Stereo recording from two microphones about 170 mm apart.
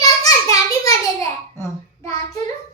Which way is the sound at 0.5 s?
20° left (ahead or behind).